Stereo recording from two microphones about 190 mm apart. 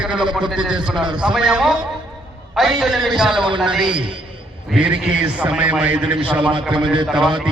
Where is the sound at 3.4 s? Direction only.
25° right (ahead or behind).